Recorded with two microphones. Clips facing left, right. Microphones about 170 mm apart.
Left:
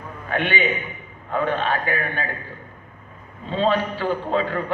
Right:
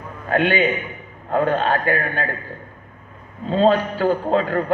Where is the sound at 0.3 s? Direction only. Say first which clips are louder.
Right 5 dB; 40° right (ahead or behind).